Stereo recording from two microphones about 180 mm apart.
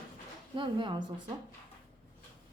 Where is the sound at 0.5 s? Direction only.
25° right (ahead or behind).